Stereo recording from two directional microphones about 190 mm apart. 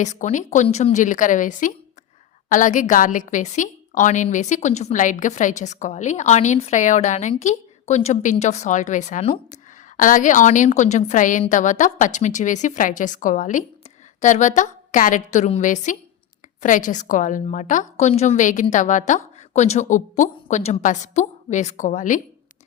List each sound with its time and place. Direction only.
0.0 s a woman's voice: 40° left (ahead or behind)